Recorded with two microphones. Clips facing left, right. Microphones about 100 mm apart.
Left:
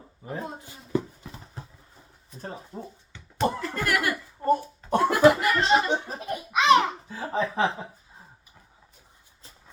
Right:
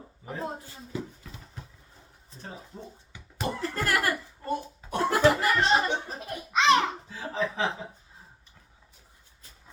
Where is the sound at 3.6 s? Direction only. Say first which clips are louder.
Left 1 dB; 35° right (ahead or behind).